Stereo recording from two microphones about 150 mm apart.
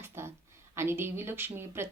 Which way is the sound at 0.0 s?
15° right (ahead or behind).